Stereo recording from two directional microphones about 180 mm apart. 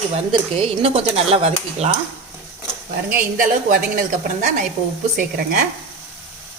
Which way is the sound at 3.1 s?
55° right (ahead or behind).